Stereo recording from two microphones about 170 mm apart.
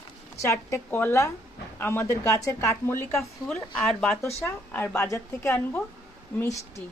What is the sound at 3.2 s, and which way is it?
Speech, 5° left (ahead or behind).